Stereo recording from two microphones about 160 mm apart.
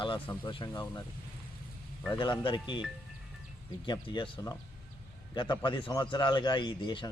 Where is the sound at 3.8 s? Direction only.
30° left (ahead or behind).